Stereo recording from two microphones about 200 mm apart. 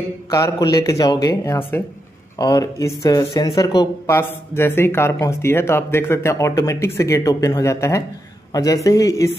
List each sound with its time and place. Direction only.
0.3 s speech: 15° left (ahead or behind)